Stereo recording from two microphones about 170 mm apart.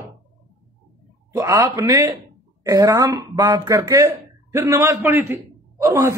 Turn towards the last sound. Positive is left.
turn(degrees=-15)  # may be behind; listen again after turning